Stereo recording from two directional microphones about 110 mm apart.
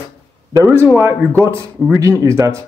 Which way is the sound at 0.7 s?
20° right (ahead or behind).